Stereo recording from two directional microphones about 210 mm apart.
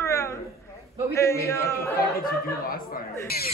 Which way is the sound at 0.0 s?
10° left (ahead or behind).